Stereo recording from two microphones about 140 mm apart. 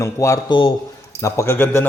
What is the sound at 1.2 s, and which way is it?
Speech, 20° left (ahead or behind).